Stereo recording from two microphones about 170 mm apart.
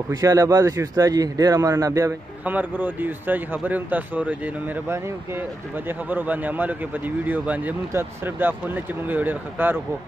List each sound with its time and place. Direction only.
0.1 s a man's voice: 20° right (ahead or behind)